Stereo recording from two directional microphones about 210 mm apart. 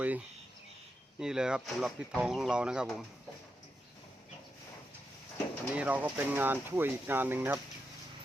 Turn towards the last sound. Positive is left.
turn(degrees=-10)  # may be behind; listen again after turning